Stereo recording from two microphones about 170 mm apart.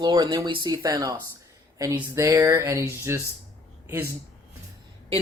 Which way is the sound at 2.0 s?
15° right (ahead or behind).